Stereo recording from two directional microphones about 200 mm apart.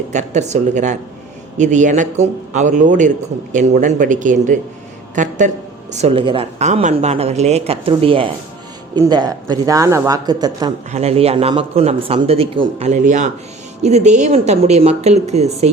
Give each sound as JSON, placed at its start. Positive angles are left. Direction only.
{"t": 0.1, "sound": "speech", "side_deg": -35}
{"t": 10.9, "sound": "speech", "side_deg": -30}